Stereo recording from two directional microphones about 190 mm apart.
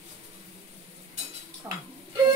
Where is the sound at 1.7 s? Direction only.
15° right (ahead or behind).